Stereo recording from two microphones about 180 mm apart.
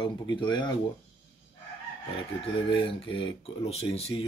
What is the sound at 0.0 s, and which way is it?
Speech, 25° left (ahead or behind).